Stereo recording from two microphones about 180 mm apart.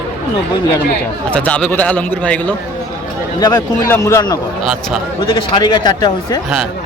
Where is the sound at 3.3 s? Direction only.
20° left (ahead or behind).